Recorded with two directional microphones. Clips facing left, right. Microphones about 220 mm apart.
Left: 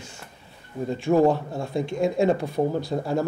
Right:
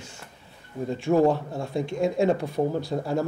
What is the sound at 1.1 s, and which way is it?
Speech, 20° left (ahead or behind).